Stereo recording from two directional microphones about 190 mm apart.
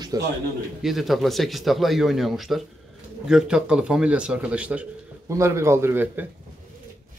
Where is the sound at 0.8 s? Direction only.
Centre (ahead or behind).